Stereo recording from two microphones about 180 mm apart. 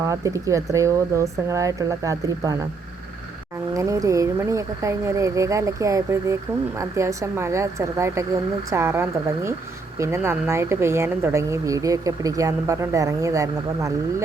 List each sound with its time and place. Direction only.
0.1 s speech: 20° right (ahead or behind)
3.8 s speech: 20° right (ahead or behind)